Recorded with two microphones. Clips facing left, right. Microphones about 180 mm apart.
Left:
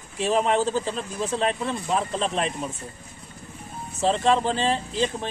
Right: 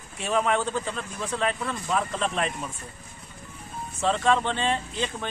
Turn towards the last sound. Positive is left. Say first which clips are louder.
# left 5 dB
turn(degrees=30)  # may be behind; listen again after turning